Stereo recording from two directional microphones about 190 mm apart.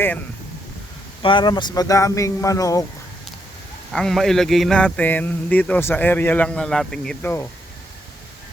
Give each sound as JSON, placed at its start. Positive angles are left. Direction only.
{"t": 1.2, "sound": "speech", "side_deg": 25}
{"t": 3.9, "sound": "speech", "side_deg": 0}